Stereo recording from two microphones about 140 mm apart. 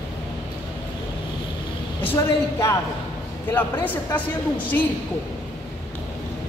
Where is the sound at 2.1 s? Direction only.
20° left (ahead or behind).